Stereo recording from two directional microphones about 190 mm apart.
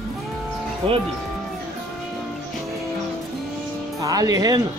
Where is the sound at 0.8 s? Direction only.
30° right (ahead or behind).